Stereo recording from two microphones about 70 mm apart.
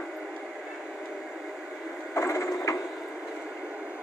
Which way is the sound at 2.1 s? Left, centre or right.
Left.